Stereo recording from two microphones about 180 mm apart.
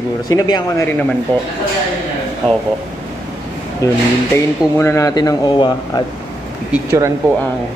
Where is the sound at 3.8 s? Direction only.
15° left (ahead or behind).